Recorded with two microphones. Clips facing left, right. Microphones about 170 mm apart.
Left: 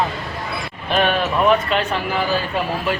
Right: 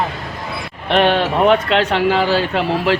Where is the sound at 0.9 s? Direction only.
75° right (ahead or behind).